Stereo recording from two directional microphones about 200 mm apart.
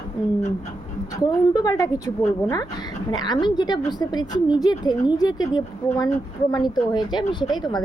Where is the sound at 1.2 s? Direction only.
20° left (ahead or behind).